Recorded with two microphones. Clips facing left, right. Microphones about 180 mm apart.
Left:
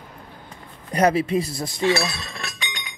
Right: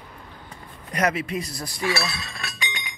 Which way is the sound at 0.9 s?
30° left (ahead or behind).